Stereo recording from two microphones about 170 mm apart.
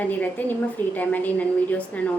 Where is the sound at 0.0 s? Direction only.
10° left (ahead or behind).